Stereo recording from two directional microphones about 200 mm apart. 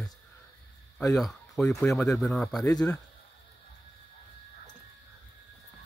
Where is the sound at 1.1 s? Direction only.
Centre (ahead or behind).